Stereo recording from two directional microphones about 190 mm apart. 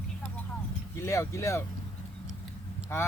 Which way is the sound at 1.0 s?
15° left (ahead or behind).